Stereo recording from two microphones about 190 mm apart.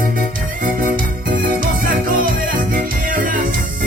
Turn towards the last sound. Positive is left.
turn(degrees=-45)  # may be behind; listen again after turning